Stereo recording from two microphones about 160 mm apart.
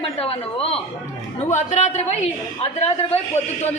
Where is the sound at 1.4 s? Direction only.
50° left (ahead or behind).